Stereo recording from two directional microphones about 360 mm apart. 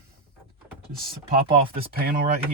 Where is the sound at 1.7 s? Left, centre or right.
Right.